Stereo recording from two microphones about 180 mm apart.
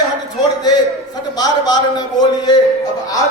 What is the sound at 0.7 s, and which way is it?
A man's voice, 20° left (ahead or behind).